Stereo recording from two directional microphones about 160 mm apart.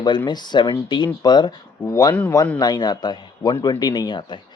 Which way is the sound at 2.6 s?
25° left (ahead or behind).